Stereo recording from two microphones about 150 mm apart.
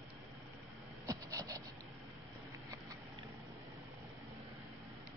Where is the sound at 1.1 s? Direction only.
25° right (ahead or behind).